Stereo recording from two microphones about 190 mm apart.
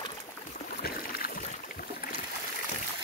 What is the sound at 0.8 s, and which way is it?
Boat, 50° left (ahead or behind).